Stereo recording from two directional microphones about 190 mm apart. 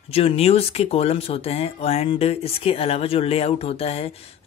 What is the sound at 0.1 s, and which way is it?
Speech, 30° left (ahead or behind).